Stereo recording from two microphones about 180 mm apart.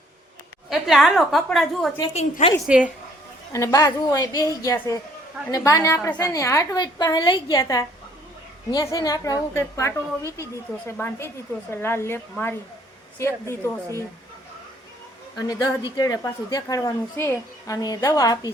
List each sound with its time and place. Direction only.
0.7 s a woman's voice: centre (ahead or behind)
2.1 s a woman's voice: 40° left (ahead or behind)
2.6 s a woman's voice: 5° right (ahead or behind)
3.5 s a woman's voice: 20° left (ahead or behind)
10.9 s speech: 10° left (ahead or behind)
15.4 s a woman's voice: 20° left (ahead or behind)